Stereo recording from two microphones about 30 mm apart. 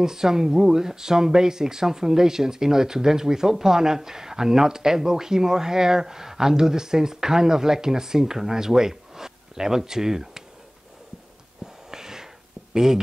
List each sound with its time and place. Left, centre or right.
0.0 s speech: centre
11.6 s a sound: centre
12.7 s speech: centre